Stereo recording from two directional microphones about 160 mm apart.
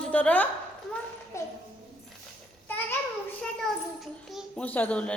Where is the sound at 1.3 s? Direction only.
20° left (ahead or behind).